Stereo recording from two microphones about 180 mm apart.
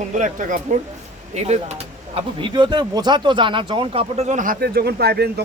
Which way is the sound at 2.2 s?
25° right (ahead or behind).